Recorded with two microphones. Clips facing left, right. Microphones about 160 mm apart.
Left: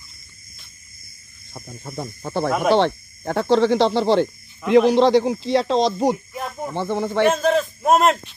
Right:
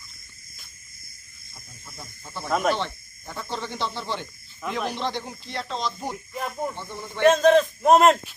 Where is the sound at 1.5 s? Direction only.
70° left (ahead or behind); by 7.2 s 90° left.